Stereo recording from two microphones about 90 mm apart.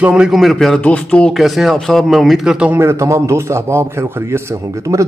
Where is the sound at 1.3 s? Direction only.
Centre (ahead or behind).